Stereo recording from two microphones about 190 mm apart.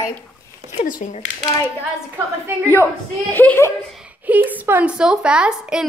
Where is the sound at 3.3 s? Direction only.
10° left (ahead or behind).